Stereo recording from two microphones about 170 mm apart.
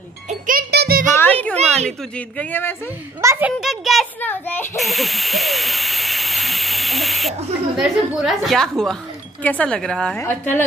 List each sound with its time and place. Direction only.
0.3 s a child's voice: 55° right (ahead or behind)
1.1 s music: 10° left (ahead or behind)
2.1 s speech: 10° left (ahead or behind)
3.2 s a child's voice: 15° right (ahead or behind)
3.6 s a woman's voice: centre (ahead or behind)
4.2 s speech: 10° left (ahead or behind)
4.7 s owl: centre (ahead or behind)
9.4 s a woman's voice: 10° left (ahead or behind)